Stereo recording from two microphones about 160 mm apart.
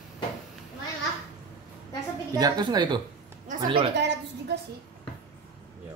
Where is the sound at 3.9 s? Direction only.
90° right.